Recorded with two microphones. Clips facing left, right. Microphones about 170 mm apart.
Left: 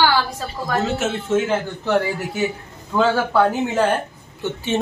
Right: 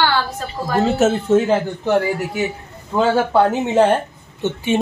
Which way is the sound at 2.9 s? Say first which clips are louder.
Right 2 dB; 20° right (ahead or behind).